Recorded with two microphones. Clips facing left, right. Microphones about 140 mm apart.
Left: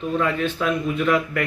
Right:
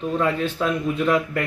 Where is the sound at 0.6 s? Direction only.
25° right (ahead or behind).